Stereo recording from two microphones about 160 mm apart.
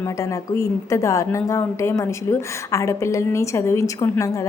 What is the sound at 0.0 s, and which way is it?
A woman's voice, 20° left (ahead or behind).